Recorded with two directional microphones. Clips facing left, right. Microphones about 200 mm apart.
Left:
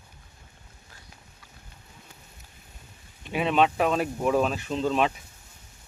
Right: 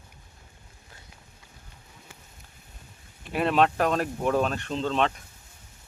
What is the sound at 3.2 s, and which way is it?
Speech, centre (ahead or behind).